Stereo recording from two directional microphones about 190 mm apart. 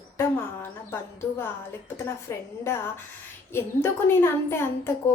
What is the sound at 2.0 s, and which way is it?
A woman's voice, 15° left (ahead or behind).